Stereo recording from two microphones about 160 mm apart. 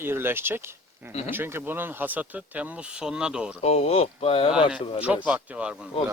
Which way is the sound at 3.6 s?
40° left (ahead or behind).